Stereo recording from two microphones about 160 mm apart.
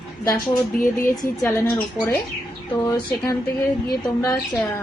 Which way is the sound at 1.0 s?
15° left (ahead or behind).